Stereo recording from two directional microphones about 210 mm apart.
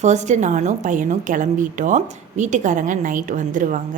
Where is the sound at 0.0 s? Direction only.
35° right (ahead or behind).